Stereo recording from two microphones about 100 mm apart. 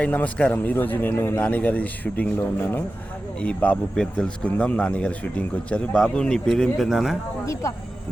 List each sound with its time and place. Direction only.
0.0 s a man's voice: 15° left (ahead or behind)